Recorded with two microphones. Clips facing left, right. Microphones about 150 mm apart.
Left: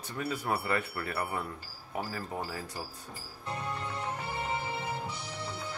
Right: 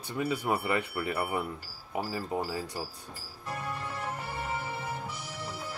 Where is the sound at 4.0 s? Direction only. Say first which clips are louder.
Even; 20° left (ahead or behind).